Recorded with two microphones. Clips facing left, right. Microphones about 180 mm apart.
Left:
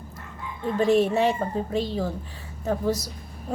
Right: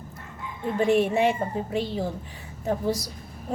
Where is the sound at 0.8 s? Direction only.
15° right (ahead or behind).